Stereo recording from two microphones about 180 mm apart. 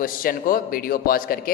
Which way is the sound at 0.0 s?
50° left (ahead or behind).